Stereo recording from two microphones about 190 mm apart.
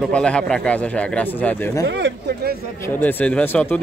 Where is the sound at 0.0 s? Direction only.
5° left (ahead or behind).